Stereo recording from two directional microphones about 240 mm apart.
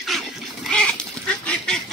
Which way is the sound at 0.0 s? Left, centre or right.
Centre.